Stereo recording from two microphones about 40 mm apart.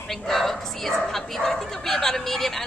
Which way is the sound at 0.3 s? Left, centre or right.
Centre.